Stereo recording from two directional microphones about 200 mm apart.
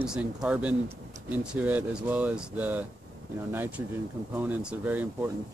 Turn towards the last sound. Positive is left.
turn(degrees=-10)  # may be behind; listen again after turning